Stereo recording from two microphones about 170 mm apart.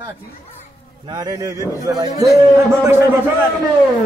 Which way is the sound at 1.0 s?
25° right (ahead or behind).